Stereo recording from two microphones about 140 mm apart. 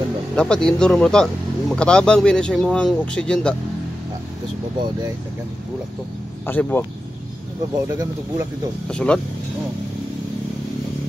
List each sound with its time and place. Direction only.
0.4 s speech: 5° left (ahead or behind)
6.4 s speech: 15° left (ahead or behind)
7.9 s speech: 20° right (ahead or behind)
8.8 s speech: 5° left (ahead or behind)